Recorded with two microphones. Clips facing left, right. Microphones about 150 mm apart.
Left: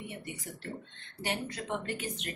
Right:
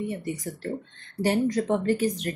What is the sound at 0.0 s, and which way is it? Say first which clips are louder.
Speech: right 12 dB; 40° right (ahead or behind).